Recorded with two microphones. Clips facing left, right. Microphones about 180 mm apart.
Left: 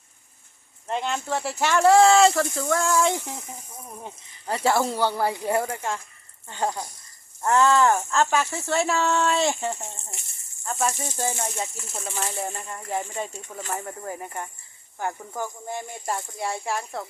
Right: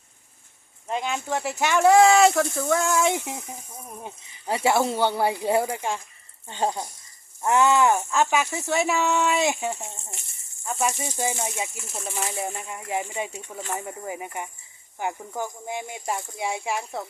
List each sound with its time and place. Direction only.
0.9 s speech: 5° right (ahead or behind)
3.1 s speech: 15° right (ahead or behind)